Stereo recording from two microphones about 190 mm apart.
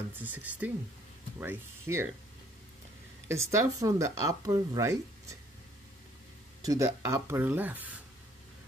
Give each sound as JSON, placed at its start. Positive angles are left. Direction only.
{"t": 0.2, "sound": "speech", "side_deg": -10}
{"t": 3.3, "sound": "speech", "side_deg": -15}
{"t": 6.6, "sound": "speech", "side_deg": -15}